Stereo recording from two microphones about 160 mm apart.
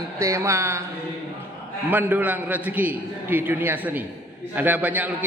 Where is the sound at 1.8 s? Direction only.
10° right (ahead or behind).